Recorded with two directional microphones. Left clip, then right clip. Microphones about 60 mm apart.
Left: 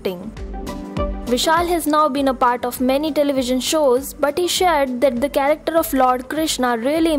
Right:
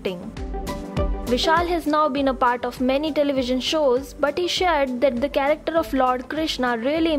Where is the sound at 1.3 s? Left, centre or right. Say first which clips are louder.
Left 3 dB; left.